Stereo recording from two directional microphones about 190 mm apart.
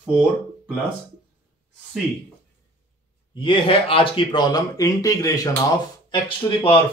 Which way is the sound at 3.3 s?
25° left (ahead or behind).